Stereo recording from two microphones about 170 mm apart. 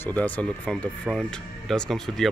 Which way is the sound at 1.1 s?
5° right (ahead or behind).